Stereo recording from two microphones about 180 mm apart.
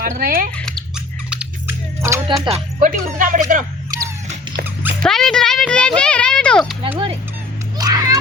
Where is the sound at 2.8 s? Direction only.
50° right (ahead or behind).